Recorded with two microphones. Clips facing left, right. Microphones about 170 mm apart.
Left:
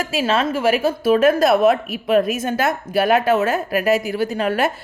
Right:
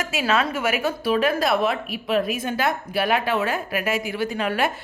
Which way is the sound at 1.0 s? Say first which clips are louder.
Left 7 dB; 45° left (ahead or behind).